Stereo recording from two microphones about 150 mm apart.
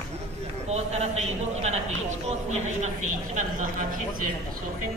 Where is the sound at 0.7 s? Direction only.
45° right (ahead or behind).